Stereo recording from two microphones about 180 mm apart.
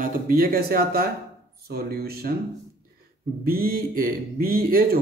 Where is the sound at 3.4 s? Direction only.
55° right (ahead or behind).